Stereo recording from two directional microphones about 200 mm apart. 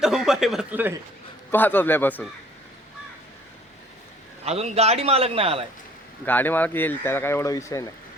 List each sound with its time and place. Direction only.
0.0 s speech: centre (ahead or behind)
1.5 s speech: 10° left (ahead or behind)
4.4 s a man's voice: 30° right (ahead or behind)
6.2 s speech: 10° left (ahead or behind)